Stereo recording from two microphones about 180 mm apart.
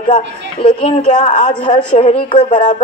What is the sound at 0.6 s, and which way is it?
Speech, 60° left (ahead or behind).